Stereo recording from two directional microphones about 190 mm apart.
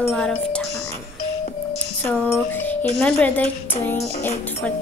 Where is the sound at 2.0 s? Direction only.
10° left (ahead or behind).